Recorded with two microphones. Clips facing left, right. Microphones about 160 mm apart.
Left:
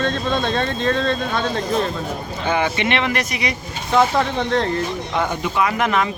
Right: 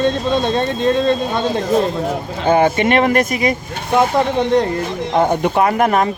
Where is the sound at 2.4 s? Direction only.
45° right (ahead or behind).